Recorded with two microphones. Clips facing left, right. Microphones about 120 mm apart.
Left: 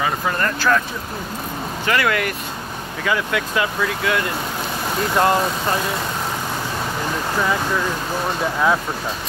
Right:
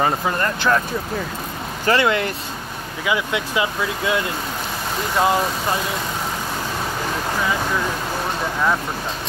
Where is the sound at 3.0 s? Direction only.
15° right (ahead or behind).